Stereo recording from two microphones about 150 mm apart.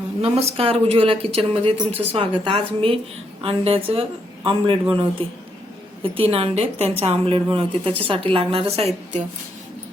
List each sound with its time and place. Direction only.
0.2 s a woman's voice: 40° right (ahead or behind)